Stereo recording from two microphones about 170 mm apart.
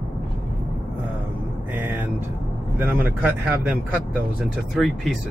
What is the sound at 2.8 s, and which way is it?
Speech, 10° right (ahead or behind).